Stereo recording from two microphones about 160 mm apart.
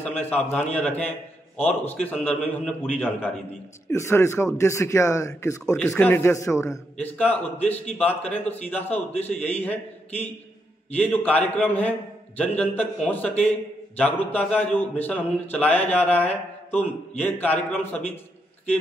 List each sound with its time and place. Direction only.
0.0 s a man's voice: 10° left (ahead or behind)